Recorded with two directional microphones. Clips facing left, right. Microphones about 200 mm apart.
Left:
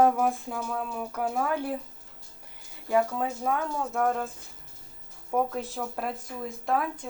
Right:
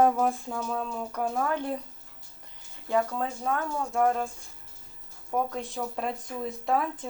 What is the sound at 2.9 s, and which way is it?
Speech, 5° left (ahead or behind).